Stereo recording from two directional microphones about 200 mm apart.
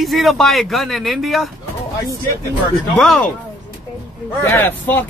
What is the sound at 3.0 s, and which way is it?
Speech, centre (ahead or behind).